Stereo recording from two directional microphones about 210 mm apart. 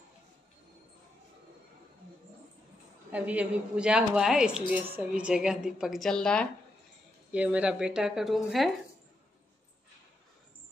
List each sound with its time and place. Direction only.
3.1 s a woman's voice: 5° right (ahead or behind)